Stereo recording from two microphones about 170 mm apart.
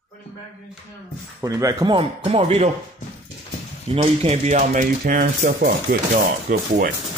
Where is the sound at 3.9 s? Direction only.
35° right (ahead or behind); by 6.9 s 60° right (ahead or behind).